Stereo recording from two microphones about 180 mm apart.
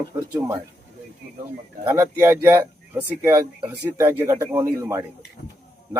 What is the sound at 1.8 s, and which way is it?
Speech, 15° right (ahead or behind).